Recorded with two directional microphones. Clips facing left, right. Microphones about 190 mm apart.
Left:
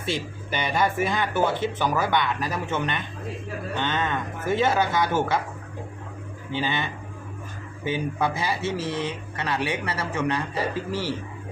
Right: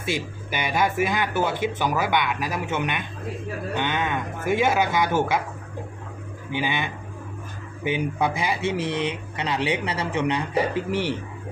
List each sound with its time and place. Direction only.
0.0 s speech: 10° right (ahead or behind)
6.5 s speech: 15° right (ahead or behind)